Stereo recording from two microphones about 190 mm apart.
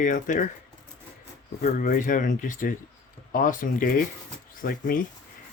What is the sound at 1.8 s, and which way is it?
Speech, 45° left (ahead or behind).